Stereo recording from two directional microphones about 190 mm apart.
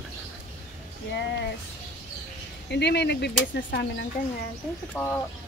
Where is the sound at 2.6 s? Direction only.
60° left (ahead or behind).